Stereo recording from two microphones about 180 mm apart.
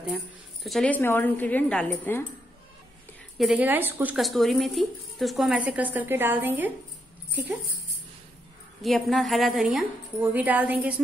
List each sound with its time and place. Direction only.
0.7 s a woman's voice: 5° left (ahead or behind)
3.3 s a woman's voice: 5° right (ahead or behind)
8.8 s speech: centre (ahead or behind)